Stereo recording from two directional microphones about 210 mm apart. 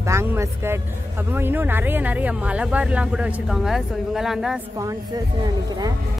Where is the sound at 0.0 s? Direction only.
15° right (ahead or behind).